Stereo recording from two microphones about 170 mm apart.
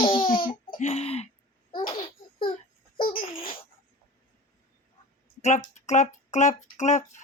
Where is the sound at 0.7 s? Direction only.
40° left (ahead or behind).